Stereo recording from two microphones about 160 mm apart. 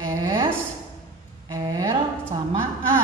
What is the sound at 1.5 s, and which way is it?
Speech, 20° right (ahead or behind).